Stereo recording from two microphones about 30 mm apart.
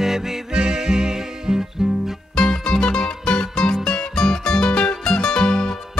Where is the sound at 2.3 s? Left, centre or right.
Left.